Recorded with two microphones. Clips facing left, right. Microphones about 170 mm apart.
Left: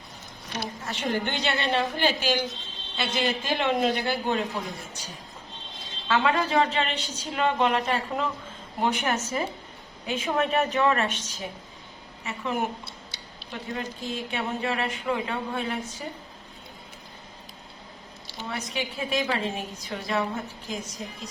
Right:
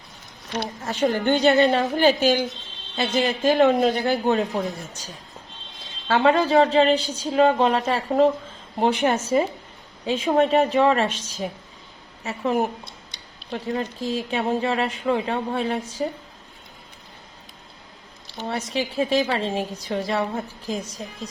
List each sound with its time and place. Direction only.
0.9 s a man's voice: 45° right (ahead or behind)
6.1 s speech: 30° right (ahead or behind)
18.4 s speech: 30° right (ahead or behind)